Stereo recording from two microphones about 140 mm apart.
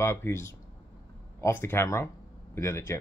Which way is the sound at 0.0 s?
20° left (ahead or behind).